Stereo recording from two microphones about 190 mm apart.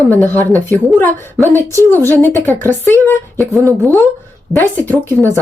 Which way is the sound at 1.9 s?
10° left (ahead or behind).